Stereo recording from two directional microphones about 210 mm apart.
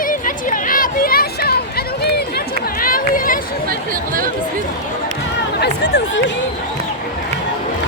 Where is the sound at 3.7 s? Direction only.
40° right (ahead or behind).